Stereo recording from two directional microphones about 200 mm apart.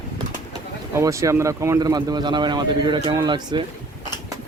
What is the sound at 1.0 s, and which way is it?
Speech, 15° right (ahead or behind).